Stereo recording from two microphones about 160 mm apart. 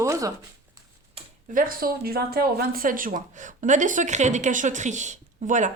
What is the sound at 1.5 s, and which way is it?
Speech, 65° right (ahead or behind).